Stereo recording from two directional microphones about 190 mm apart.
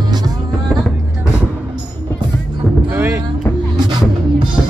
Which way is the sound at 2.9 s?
10° right (ahead or behind).